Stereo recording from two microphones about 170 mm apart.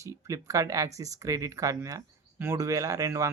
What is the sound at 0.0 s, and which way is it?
Speech, 20° right (ahead or behind).